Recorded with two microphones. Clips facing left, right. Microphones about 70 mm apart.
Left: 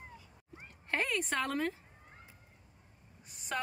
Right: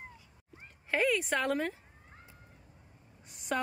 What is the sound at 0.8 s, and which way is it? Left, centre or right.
Speech, centre.